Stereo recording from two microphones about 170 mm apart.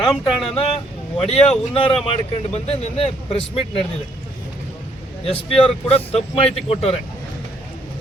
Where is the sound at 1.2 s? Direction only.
35° left (ahead or behind).